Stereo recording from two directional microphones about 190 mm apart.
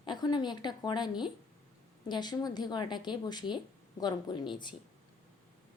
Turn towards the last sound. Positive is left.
turn(degrees=25)  # may be behind; listen again after turning